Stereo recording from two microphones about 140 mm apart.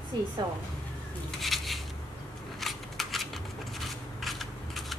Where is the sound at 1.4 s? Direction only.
Centre (ahead or behind).